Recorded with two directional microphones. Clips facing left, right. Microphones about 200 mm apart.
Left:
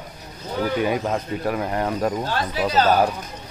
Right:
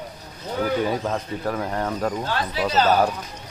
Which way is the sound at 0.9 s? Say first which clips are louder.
Left 2 dB; 15° left (ahead or behind).